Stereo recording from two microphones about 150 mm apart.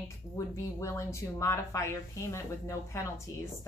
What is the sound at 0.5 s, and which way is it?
A woman's voice, 20° left (ahead or behind).